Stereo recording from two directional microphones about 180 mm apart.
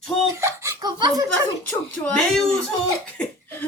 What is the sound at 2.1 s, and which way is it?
Speech, 5° left (ahead or behind).